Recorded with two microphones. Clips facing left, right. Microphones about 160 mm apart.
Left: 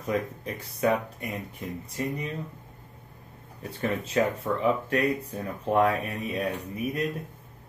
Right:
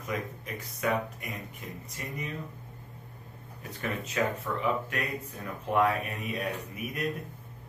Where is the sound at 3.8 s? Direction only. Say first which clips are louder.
Left 5 dB; 30° left (ahead or behind).